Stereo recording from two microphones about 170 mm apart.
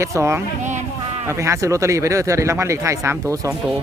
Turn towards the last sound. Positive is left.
turn(degrees=-15)  # may be behind; listen again after turning